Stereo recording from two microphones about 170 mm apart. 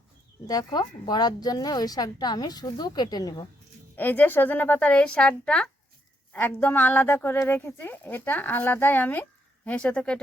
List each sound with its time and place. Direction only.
0.4 s speech: 25° left (ahead or behind)
3.9 s speech: 10° left (ahead or behind)